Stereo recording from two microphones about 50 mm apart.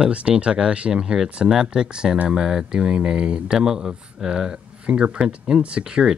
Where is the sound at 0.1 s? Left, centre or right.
Right.